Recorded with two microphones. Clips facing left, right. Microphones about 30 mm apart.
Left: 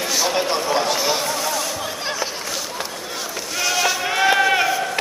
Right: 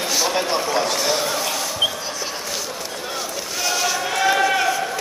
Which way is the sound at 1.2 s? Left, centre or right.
Centre.